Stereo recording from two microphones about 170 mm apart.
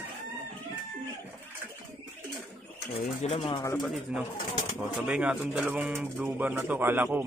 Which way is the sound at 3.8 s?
Centre (ahead or behind).